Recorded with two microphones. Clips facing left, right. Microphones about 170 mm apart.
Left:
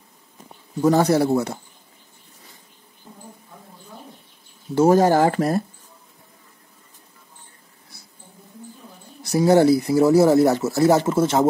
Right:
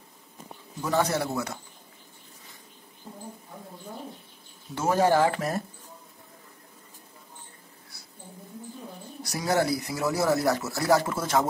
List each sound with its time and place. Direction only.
0.7 s speech: 35° left (ahead or behind)
4.7 s speech: 40° left (ahead or behind)
9.2 s speech: 25° left (ahead or behind)